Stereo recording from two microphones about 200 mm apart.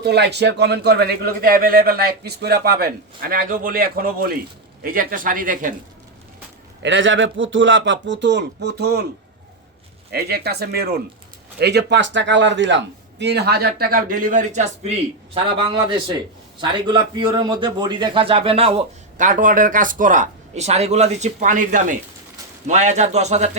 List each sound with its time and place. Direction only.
0.0 s a man's voice: 55° right (ahead or behind)
6.8 s a man's voice: 70° right (ahead or behind)
10.1 s a man's voice: 50° right (ahead or behind); by 14.9 s 35° right (ahead or behind)
15.4 s a man's voice: 25° right (ahead or behind)